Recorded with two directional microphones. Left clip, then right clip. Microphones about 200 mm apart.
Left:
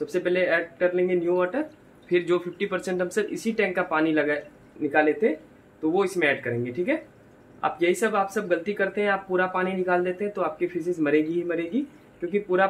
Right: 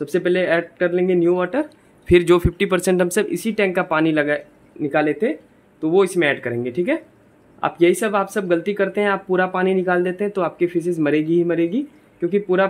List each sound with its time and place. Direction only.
0.0 s speech: 55° right (ahead or behind)